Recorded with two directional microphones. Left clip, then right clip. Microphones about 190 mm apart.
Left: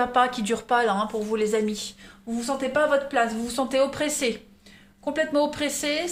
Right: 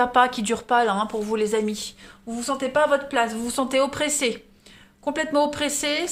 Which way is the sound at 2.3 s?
40° right (ahead or behind).